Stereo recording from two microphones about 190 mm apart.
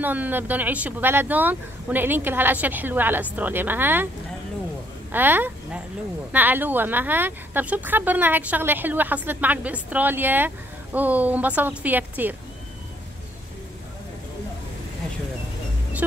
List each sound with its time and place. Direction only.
0.0 s a woman's voice: 10° right (ahead or behind)
5.1 s a woman's voice: 10° right (ahead or behind)